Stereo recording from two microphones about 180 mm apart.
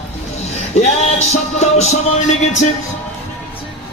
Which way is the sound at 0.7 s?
40° left (ahead or behind).